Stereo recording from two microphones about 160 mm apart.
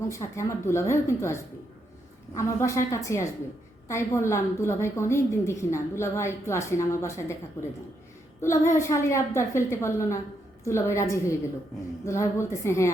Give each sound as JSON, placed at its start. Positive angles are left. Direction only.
{"t": 0.1, "sound": "a woman's voice", "side_deg": 20}